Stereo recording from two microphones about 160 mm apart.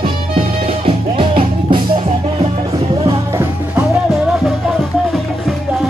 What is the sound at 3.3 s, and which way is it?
Music, 15° right (ahead or behind).